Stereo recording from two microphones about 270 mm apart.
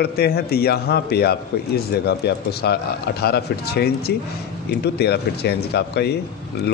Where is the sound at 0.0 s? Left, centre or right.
Left.